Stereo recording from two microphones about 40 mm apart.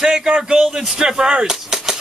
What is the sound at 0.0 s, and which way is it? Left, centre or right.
Speech, centre.